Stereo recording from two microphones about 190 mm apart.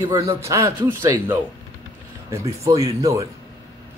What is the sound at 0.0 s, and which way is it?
A man's voice, 15° right (ahead or behind).